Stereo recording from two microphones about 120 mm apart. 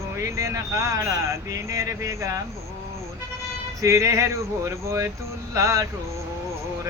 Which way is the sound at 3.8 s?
25° right (ahead or behind).